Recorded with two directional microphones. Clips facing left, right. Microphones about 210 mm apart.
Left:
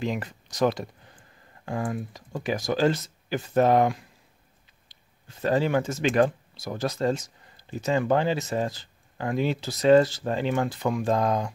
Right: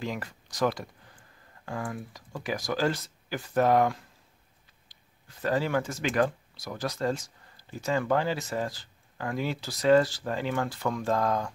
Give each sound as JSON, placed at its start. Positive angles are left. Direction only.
{"t": 0.0, "sound": "speech", "side_deg": 20}